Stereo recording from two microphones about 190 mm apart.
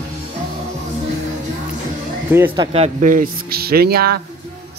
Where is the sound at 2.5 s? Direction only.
30° right (ahead or behind); by 4.2 s 55° right (ahead or behind).